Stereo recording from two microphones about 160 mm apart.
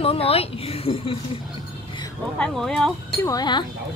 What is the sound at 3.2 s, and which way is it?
Speech, 25° left (ahead or behind).